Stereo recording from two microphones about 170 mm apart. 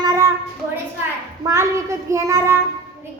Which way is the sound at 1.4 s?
20° right (ahead or behind).